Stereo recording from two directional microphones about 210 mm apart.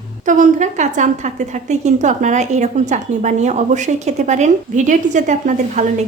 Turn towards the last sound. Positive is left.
turn(degrees=-35)  # may be behind; listen again after turning